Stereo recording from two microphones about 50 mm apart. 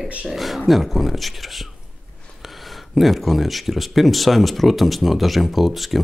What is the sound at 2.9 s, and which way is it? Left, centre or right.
Speech, centre.